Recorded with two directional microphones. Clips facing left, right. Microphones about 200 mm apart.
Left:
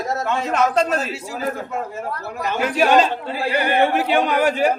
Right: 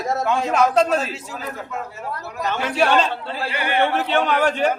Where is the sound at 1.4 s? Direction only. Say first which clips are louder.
Left 6 dB; 45° left (ahead or behind).